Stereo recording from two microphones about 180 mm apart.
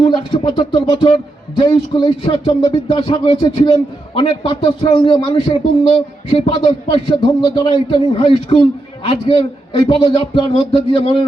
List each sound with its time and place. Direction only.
0.0 s speech: 30° left (ahead or behind)